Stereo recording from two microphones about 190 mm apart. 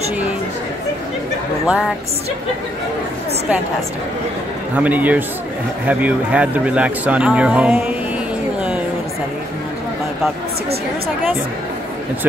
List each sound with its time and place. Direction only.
4.7 s speech: 10° right (ahead or behind)